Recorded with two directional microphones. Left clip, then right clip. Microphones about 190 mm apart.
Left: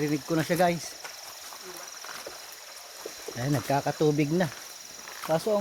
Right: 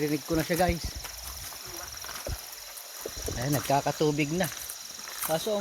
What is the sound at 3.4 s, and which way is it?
Speech, 5° right (ahead or behind).